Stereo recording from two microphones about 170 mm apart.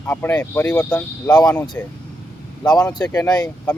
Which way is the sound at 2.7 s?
20° left (ahead or behind).